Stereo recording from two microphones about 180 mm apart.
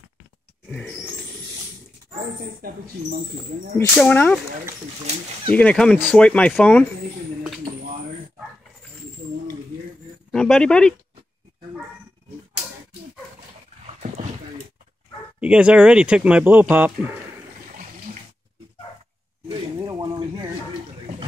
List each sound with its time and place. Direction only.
0.7 s speech: 10° left (ahead or behind)
3.9 s speech: 5° left (ahead or behind)
5.5 s speech: 10° left (ahead or behind)
10.3 s speech: 5° left (ahead or behind)
15.4 s speech: 5° right (ahead or behind)
19.5 s a sound: 25° right (ahead or behind)